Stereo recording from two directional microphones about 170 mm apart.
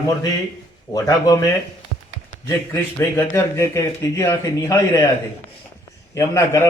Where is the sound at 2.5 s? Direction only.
15° left (ahead or behind).